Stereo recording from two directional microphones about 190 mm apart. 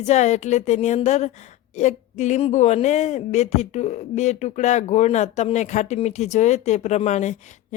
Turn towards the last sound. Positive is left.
turn(degrees=35)  # may be behind; listen again after turning